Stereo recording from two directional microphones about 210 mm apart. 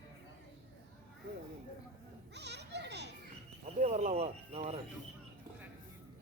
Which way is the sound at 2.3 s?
55° right (ahead or behind).